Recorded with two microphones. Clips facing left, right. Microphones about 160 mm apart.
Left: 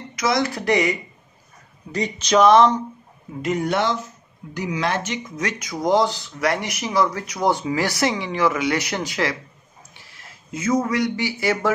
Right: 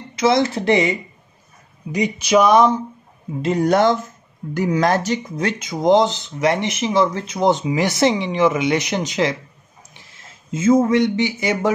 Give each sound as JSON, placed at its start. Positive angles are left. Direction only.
{"t": 0.1, "sound": "speech", "side_deg": -30}
{"t": 1.9, "sound": "speech", "side_deg": -15}
{"t": 3.4, "sound": "a man's voice", "side_deg": -40}